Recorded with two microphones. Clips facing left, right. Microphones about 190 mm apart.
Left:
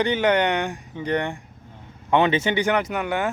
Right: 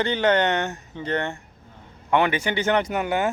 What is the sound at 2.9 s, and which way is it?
Speech, 35° right (ahead or behind).